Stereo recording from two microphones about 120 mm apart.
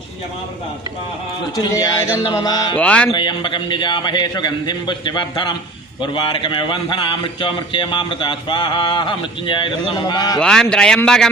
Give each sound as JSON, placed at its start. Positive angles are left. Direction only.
{"t": 1.5, "sound": "a man's voice", "side_deg": 35}
{"t": 2.7, "sound": "speech", "side_deg": 10}
{"t": 3.1, "sound": "a man's voice", "side_deg": 40}
{"t": 10.4, "sound": "a man's voice", "side_deg": 5}